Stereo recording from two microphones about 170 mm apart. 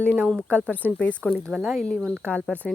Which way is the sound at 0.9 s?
10° left (ahead or behind).